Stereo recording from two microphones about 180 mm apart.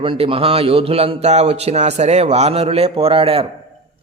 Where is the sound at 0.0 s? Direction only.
30° right (ahead or behind).